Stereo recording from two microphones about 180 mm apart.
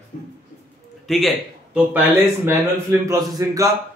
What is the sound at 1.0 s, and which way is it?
A man's voice, centre (ahead or behind).